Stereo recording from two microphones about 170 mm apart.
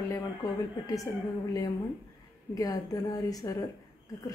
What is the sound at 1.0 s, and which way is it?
A woman's voice, 20° left (ahead or behind).